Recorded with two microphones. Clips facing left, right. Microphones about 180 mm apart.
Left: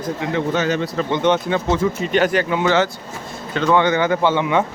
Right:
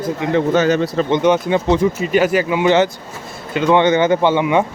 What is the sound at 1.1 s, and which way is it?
Speech, 10° right (ahead or behind).